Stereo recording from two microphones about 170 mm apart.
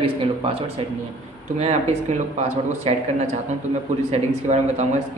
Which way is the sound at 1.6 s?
40° right (ahead or behind).